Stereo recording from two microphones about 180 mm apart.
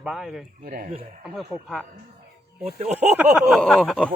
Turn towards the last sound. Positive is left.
turn(degrees=5)  # may be behind; listen again after turning